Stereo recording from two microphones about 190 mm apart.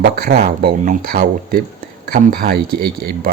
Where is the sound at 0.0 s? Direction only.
55° right (ahead or behind).